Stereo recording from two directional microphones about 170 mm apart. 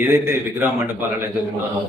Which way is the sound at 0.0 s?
15° right (ahead or behind).